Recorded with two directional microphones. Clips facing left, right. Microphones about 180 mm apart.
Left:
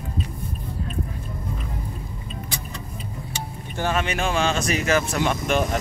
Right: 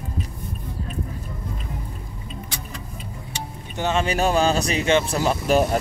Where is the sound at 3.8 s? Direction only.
25° right (ahead or behind).